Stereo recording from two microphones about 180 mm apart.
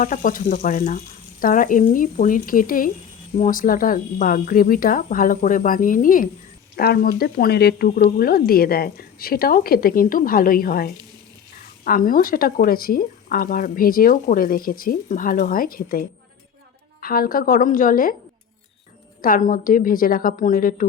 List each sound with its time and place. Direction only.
0.0 s speech: 45° left (ahead or behind)
19.2 s speech: 45° left (ahead or behind)